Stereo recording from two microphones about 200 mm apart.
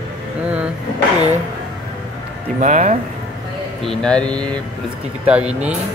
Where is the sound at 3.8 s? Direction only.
5° left (ahead or behind).